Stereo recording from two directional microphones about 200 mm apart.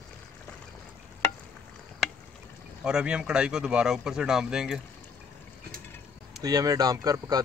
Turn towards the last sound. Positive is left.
turn(degrees=-20)  # may be behind; listen again after turning